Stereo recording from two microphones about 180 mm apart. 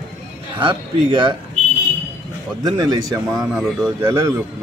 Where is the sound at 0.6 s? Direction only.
30° right (ahead or behind).